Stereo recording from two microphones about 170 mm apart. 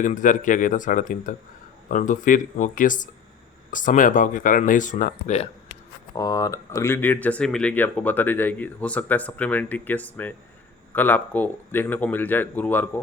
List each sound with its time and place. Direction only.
0.0 s speech: 50° left (ahead or behind)
6.1 s speech: 20° left (ahead or behind)